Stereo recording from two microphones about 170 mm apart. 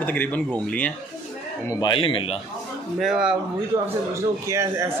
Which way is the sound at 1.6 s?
25° left (ahead or behind).